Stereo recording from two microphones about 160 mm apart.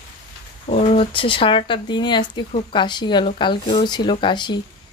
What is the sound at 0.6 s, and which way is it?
Speech, 40° left (ahead or behind).